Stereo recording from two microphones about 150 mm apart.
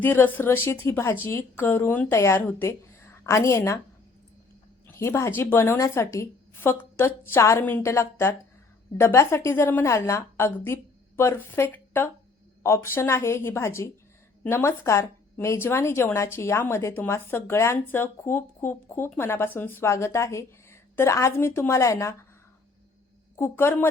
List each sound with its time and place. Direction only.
0.0 s a woman's voice: 15° left (ahead or behind)
4.9 s a woman's voice: 15° left (ahead or behind)
23.4 s a woman's voice: 15° left (ahead or behind)